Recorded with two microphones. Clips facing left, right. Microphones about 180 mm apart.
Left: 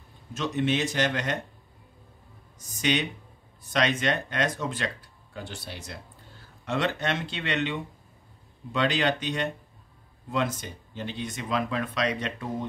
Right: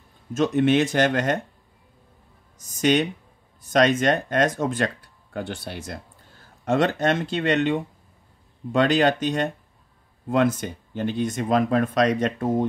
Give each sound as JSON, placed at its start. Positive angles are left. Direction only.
{"t": 0.3, "sound": "speech", "side_deg": -50}
{"t": 2.7, "sound": "speech", "side_deg": -45}